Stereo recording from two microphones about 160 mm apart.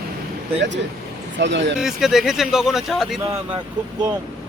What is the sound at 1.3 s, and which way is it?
Speech, 90° right.